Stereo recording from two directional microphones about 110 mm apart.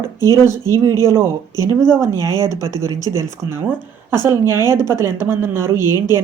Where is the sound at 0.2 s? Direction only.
35° left (ahead or behind).